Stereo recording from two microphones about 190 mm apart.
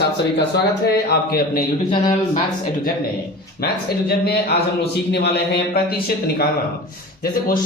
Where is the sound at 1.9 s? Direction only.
25° left (ahead or behind).